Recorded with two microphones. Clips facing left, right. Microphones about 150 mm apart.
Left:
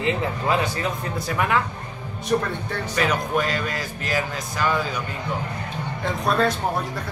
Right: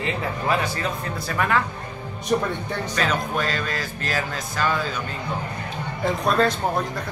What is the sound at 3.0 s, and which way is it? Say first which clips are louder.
Speech: left 2 dB; 15° left (ahead or behind).